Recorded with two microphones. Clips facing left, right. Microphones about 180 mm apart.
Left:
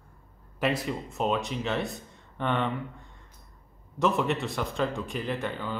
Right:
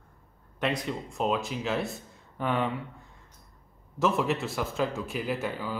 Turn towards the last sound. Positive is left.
turn(degrees=-5)  # may be behind; listen again after turning